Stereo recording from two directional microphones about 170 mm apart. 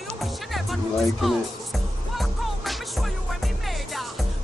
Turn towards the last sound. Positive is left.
turn(degrees=0)  # may be behind; listen again after turning